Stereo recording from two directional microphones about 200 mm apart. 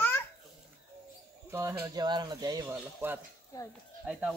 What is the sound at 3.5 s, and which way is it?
Speech, 15° left (ahead or behind).